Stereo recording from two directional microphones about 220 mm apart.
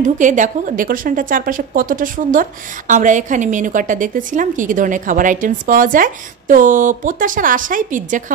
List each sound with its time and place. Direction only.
0.0 s a woman's voice: 35° right (ahead or behind)